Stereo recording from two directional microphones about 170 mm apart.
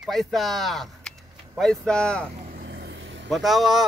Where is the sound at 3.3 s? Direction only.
Centre (ahead or behind).